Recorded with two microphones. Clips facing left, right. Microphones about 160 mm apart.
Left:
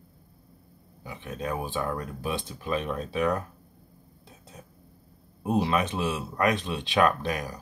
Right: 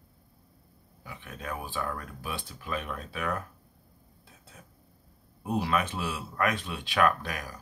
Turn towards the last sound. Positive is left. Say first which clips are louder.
# left 2 dB
turn(degrees=25)  # may be behind; listen again after turning